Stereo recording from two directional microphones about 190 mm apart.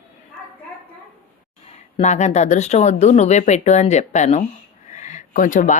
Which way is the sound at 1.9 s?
35° left (ahead or behind).